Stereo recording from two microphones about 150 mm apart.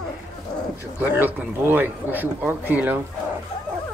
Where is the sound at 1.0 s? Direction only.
10° right (ahead or behind).